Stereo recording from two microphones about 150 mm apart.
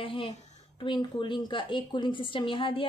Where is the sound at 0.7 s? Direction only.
30° left (ahead or behind).